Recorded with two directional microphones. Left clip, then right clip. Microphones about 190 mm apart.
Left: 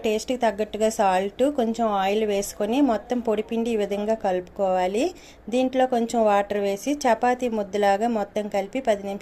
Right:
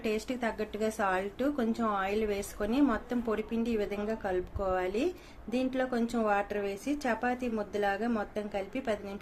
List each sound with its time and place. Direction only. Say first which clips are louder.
0.0 s a woman's voice: left 10 dB; 30° left (ahead or behind)